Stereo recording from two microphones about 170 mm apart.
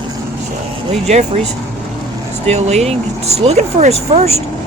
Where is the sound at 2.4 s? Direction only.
40° right (ahead or behind).